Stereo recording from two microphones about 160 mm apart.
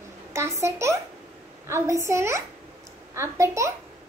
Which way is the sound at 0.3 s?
15° right (ahead or behind).